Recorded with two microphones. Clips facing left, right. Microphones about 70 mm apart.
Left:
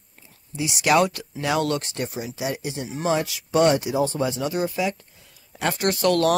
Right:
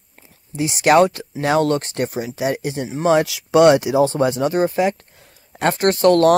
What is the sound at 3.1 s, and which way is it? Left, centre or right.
Speech, right.